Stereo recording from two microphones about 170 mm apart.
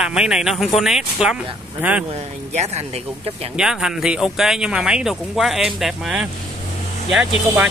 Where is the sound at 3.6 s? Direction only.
5° right (ahead or behind).